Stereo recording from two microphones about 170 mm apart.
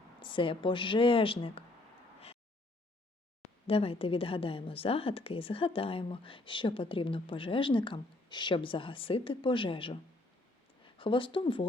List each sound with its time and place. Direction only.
0.2 s a woman's voice: 30° left (ahead or behind)
3.7 s a woman's voice: 35° left (ahead or behind)